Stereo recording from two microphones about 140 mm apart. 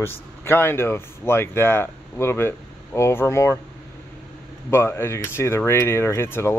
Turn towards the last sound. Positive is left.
turn(degrees=15)  # may be behind; listen again after turning